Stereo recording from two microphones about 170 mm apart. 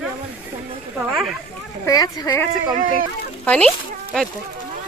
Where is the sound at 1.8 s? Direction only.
25° left (ahead or behind).